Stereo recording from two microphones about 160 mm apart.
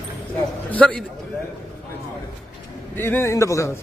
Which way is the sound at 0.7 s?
10° left (ahead or behind).